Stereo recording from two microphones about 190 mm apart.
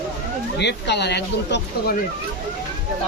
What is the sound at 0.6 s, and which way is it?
Speech, 65° left (ahead or behind).